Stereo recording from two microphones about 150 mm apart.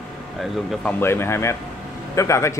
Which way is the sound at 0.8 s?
15° left (ahead or behind).